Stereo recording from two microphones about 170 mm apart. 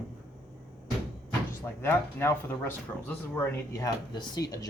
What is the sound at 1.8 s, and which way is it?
Speech, 15° left (ahead or behind).